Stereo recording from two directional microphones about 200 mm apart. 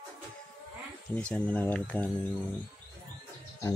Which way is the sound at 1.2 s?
5° left (ahead or behind).